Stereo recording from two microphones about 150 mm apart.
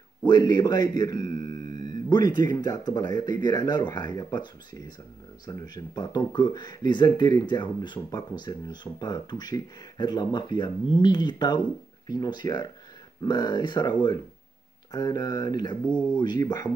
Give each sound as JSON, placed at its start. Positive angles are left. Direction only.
{"t": 0.2, "sound": "speech", "side_deg": 30}
{"t": 1.3, "sound": "music", "side_deg": -65}
{"t": 1.7, "sound": "a sound", "side_deg": 30}
{"t": 2.5, "sound": "speech", "side_deg": 25}
{"t": 15.8, "sound": "speech", "side_deg": 10}
{"t": 16.2, "sound": "speech", "side_deg": 30}